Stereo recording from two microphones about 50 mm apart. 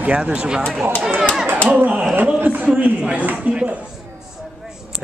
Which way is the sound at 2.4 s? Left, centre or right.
Right.